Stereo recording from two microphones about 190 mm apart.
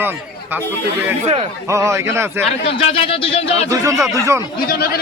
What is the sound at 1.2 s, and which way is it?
Speech, 30° right (ahead or behind).